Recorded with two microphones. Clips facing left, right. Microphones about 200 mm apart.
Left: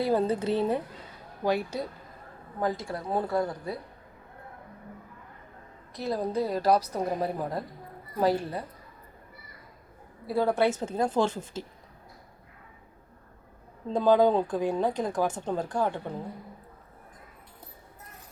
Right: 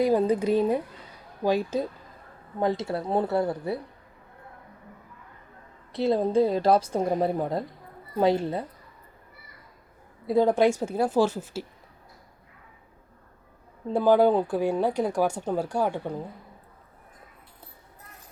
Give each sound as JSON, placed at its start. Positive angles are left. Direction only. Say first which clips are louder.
{"t": 0.0, "sound": "a woman's voice", "louder": "right 4 dB", "side_deg": -15}
{"t": 5.9, "sound": "a woman's voice", "louder": "right 7 dB", "side_deg": -25}
{"t": 10.2, "sound": "speech", "louder": "right 4 dB", "side_deg": -20}
{"t": 13.9, "sound": "speech", "louder": "right 2 dB", "side_deg": -10}